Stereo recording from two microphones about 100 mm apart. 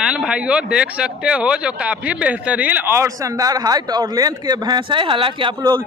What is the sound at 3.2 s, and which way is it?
Speech, 35° right (ahead or behind).